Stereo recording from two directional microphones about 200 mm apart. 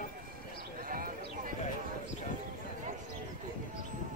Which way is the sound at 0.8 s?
45° right (ahead or behind).